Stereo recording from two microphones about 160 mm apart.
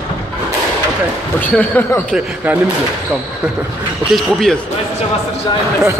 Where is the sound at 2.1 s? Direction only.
5° right (ahead or behind).